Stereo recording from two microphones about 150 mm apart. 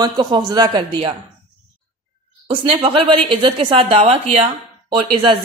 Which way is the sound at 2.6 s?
35° right (ahead or behind).